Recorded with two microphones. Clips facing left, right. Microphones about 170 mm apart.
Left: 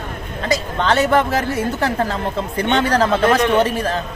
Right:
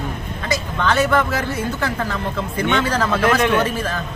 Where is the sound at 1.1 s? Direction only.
30° left (ahead or behind).